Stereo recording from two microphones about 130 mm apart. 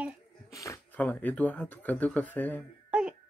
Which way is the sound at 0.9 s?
10° left (ahead or behind).